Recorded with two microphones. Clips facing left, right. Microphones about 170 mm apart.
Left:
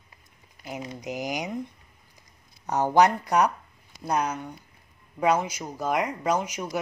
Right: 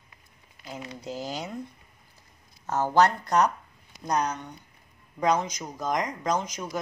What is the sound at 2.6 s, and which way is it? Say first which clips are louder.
Speech: left 2 dB; 15° left (ahead or behind).